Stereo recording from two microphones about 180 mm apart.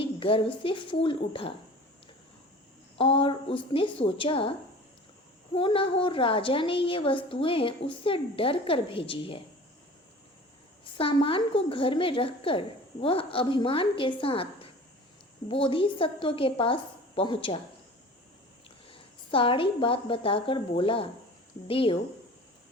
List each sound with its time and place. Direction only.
0.0 s a woman's voice: 30° left (ahead or behind)
3.0 s a woman's voice: 30° left (ahead or behind)
5.5 s a woman's voice: 30° left (ahead or behind)
10.9 s a woman's voice: 30° left (ahead or behind)
18.9 s a woman's voice: 30° left (ahead or behind)